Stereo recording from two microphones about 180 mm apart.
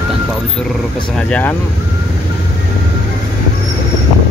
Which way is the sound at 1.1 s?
10° left (ahead or behind).